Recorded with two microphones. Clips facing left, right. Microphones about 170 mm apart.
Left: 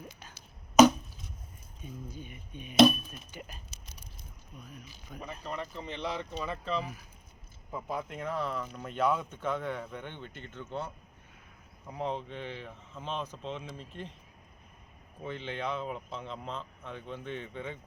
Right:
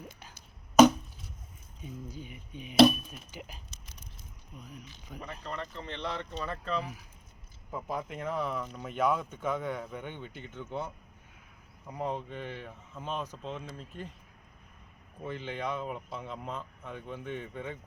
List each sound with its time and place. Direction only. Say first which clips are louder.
1.8 s chop: right 1 dB; 15° right (ahead or behind)
3.1 s keys jangling: even; 10° right (ahead or behind)
4.5 s chop: right 1 dB; 15° right (ahead or behind)
5.2 s speech: left 1 dB; 10° left (ahead or behind)
15.2 s speech: even; 5° right (ahead or behind)